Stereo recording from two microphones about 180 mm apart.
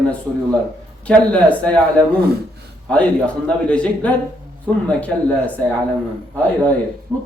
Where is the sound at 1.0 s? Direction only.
5° left (ahead or behind).